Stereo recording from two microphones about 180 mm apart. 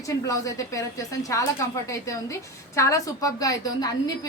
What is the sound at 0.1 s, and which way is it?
A woman's voice, 20° left (ahead or behind).